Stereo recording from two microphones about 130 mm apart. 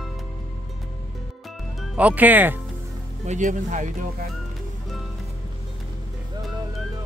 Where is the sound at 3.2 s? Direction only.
65° right (ahead or behind).